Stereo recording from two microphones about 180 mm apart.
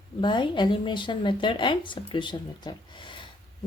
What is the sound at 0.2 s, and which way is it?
A woman's voice, 25° left (ahead or behind).